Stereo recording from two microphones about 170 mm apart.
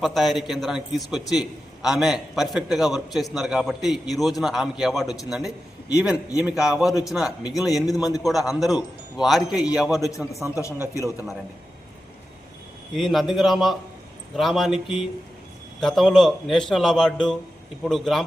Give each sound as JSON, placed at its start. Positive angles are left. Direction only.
{"t": 0.0, "sound": "a man's voice", "side_deg": 0}
{"t": 10.1, "sound": "a man's voice", "side_deg": 20}
{"t": 12.9, "sound": "a man's voice", "side_deg": 0}